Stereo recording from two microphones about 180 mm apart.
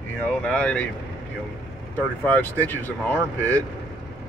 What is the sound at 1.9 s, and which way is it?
Speech, 10° left (ahead or behind).